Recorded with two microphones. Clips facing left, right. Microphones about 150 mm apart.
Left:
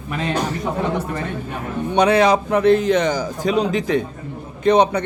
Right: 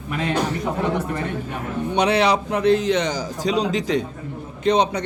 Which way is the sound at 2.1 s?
50° left (ahead or behind).